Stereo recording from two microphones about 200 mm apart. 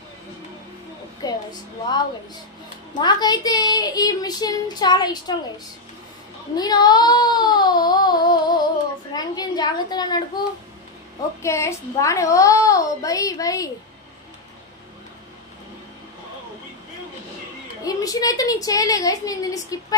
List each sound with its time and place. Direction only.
1.2 s a sound: 20° left (ahead or behind)
3.0 s speech: 20° left (ahead or behind)
6.6 s child singing: 20° left (ahead or behind)
9.1 s a woman's voice: 20° left (ahead or behind)
11.4 s a child's voice: 15° left (ahead or behind)
17.8 s a child's voice: 20° left (ahead or behind)